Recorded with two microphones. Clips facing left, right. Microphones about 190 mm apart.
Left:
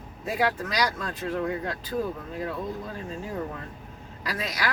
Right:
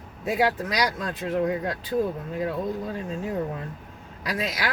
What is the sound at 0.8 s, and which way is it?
Speech, 15° right (ahead or behind).